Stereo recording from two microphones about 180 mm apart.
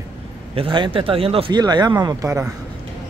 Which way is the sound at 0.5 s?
30° right (ahead or behind).